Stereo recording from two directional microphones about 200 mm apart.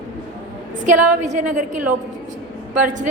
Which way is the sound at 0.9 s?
40° right (ahead or behind).